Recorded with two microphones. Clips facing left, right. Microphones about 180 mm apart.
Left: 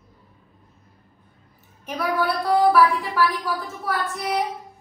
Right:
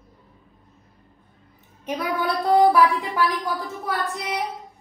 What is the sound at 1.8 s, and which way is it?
Child singing, 20° right (ahead or behind).